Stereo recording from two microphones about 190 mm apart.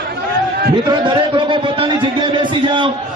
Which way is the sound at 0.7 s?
25° right (ahead or behind).